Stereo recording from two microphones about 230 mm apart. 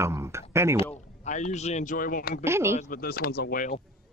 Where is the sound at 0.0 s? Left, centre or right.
Centre.